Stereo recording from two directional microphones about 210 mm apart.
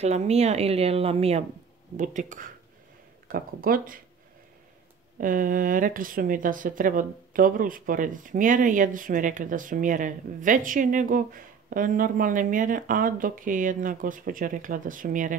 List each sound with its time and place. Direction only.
0.0 s speech: 30° right (ahead or behind)
5.2 s speech: 40° right (ahead or behind)